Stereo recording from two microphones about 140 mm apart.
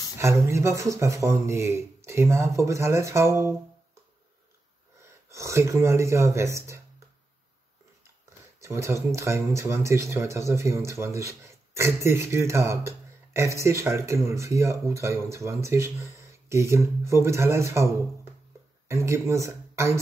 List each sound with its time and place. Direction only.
0.2 s speech: 20° right (ahead or behind)
5.0 s speech: 20° right (ahead or behind)
8.5 s speech: 20° right (ahead or behind)